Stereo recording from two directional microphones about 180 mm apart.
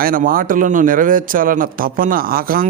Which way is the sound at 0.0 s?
50° right (ahead or behind).